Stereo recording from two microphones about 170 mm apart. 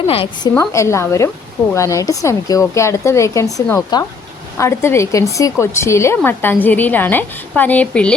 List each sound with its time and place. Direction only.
0.1 s a woman's voice: 30° left (ahead or behind)
0.5 s a woman's voice: 15° left (ahead or behind)